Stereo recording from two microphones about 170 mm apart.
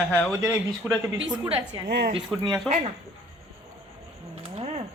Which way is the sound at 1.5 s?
35° right (ahead or behind).